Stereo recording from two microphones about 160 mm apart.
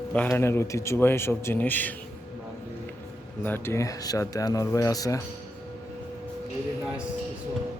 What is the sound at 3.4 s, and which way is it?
Speech, 15° left (ahead or behind).